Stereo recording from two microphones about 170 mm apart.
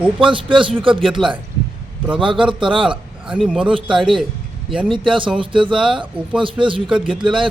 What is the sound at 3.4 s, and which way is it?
Speech, 5° right (ahead or behind).